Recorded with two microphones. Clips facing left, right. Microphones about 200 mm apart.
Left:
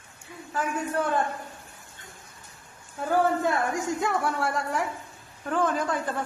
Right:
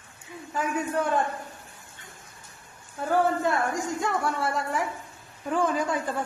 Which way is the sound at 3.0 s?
Centre (ahead or behind).